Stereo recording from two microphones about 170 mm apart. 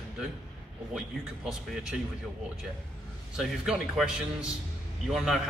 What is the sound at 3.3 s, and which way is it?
Speech, 5° right (ahead or behind).